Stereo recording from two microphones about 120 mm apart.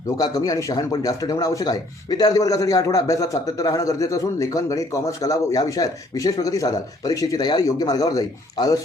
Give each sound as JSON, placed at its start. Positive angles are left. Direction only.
{"t": 0.2, "sound": "speech", "side_deg": 30}